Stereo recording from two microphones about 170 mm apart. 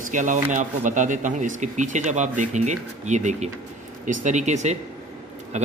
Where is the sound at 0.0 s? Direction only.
50° right (ahead or behind).